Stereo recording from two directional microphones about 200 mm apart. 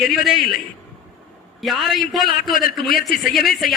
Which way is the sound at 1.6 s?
Centre (ahead or behind).